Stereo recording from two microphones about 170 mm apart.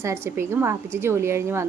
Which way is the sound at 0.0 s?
15° right (ahead or behind).